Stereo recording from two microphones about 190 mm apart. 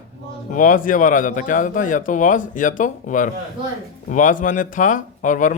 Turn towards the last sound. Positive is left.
turn(degrees=45)  # may be behind; listen again after turning